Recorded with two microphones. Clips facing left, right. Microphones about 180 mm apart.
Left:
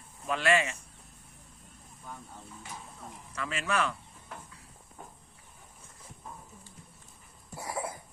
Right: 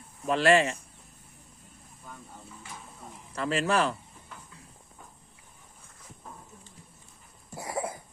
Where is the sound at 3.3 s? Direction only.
35° right (ahead or behind).